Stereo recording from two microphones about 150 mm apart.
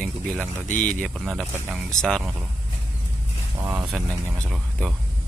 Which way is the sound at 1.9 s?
5° left (ahead or behind).